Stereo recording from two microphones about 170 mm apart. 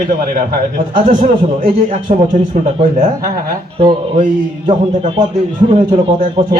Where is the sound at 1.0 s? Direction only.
35° right (ahead or behind).